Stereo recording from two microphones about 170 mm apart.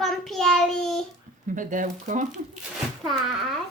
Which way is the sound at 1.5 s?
50° right (ahead or behind).